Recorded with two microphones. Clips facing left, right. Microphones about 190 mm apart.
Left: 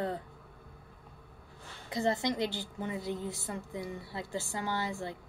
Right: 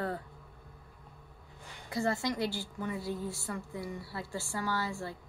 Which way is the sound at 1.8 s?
20° left (ahead or behind).